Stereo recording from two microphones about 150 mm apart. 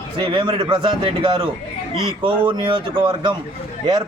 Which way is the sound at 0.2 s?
35° right (ahead or behind).